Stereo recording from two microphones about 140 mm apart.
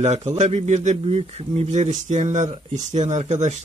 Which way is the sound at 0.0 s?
55° right (ahead or behind).